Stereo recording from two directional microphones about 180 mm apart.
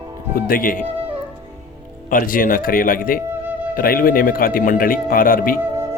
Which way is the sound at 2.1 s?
50° left (ahead or behind).